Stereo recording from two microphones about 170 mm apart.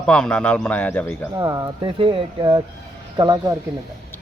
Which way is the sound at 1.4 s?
25° right (ahead or behind).